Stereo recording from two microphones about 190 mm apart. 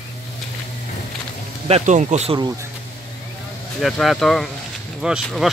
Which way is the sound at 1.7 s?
40° right (ahead or behind).